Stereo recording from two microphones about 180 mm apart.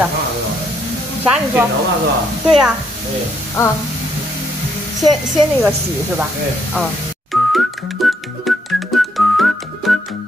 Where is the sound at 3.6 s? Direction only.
15° left (ahead or behind).